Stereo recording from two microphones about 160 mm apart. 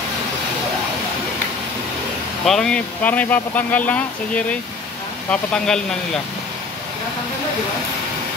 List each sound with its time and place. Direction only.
2.4 s speech: 5° left (ahead or behind)